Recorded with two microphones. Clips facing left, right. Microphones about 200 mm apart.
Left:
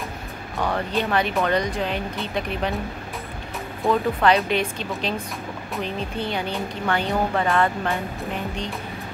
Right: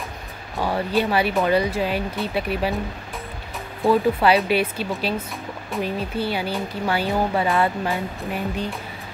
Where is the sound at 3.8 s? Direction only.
5° right (ahead or behind).